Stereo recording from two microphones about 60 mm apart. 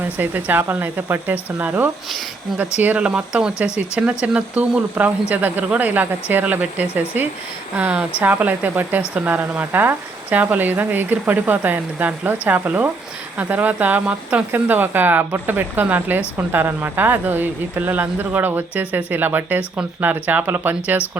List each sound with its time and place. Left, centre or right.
0.0 s speech: right